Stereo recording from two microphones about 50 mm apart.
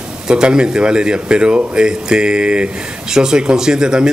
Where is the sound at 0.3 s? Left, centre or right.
Centre.